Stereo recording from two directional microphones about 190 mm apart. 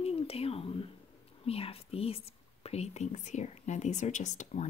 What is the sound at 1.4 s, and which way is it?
Speech, 30° left (ahead or behind).